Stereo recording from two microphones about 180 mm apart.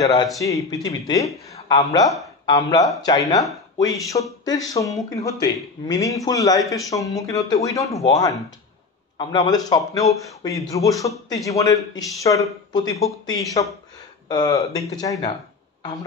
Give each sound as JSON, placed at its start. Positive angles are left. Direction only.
{"t": 0.0, "sound": "a man's voice", "side_deg": 20}
{"t": 9.2, "sound": "a man's voice", "side_deg": 25}